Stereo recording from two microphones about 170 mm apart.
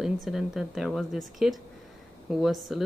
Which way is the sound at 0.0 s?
5° right (ahead or behind).